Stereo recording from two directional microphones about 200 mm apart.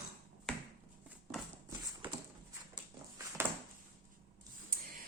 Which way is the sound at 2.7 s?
15° right (ahead or behind).